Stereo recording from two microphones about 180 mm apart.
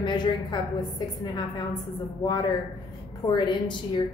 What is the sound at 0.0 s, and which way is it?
A woman's voice, 25° left (ahead or behind).